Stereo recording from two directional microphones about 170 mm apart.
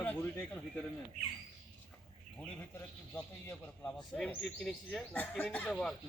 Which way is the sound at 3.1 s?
10° left (ahead or behind).